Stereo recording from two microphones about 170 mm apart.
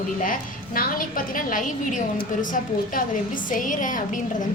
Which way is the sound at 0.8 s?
55° left (ahead or behind).